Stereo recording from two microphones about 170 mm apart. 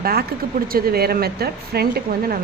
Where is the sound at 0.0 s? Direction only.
65° right (ahead or behind).